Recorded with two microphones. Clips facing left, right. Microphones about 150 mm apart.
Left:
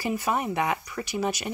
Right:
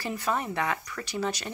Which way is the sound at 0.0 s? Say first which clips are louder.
Left 3 dB; 10° left (ahead or behind).